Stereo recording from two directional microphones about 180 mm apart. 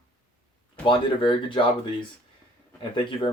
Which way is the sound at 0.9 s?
25° left (ahead or behind).